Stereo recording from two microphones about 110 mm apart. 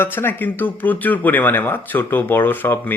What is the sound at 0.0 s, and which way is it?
Speech, 20° left (ahead or behind).